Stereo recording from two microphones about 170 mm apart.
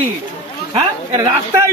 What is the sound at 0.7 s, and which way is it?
Speech, 25° right (ahead or behind).